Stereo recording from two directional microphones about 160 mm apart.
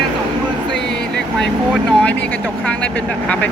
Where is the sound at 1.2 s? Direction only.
5° left (ahead or behind).